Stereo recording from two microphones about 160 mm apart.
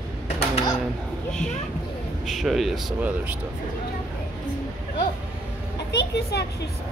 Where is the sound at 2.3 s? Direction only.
Centre (ahead or behind).